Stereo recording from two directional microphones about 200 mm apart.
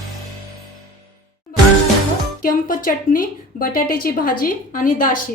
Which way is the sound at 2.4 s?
45° left (ahead or behind).